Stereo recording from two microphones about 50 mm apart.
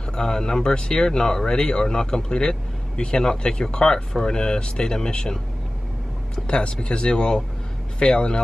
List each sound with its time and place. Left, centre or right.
0.1 s speech: centre